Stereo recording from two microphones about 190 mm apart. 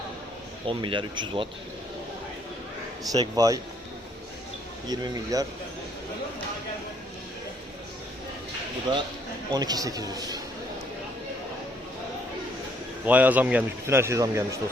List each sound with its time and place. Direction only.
0.7 s a man's voice: 25° right (ahead or behind)
3.1 s a man's voice: 20° right (ahead or behind)
4.9 s a man's voice: 20° right (ahead or behind)
9.5 s a man's voice: 20° right (ahead or behind)
13.1 s a man's voice: 10° right (ahead or behind)